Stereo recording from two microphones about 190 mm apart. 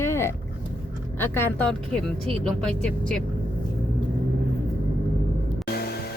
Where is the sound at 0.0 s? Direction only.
15° left (ahead or behind).